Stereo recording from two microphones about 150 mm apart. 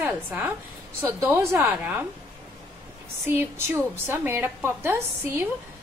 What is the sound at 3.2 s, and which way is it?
A woman's voice, 15° right (ahead or behind).